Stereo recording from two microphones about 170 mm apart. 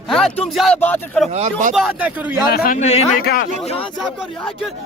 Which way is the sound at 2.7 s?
40° left (ahead or behind).